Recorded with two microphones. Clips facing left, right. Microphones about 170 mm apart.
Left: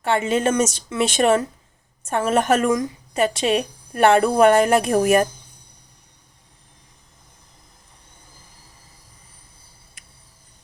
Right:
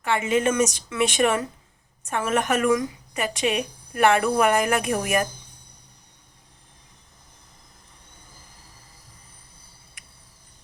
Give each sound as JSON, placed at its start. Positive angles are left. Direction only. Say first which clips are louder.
{"t": 0.0, "sound": "speech", "louder": "left 2 dB", "side_deg": 35}